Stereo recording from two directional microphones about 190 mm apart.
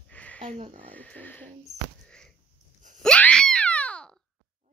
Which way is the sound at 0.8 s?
10° left (ahead or behind).